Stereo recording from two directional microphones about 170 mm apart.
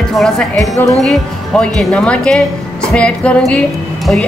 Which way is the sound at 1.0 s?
5° left (ahead or behind).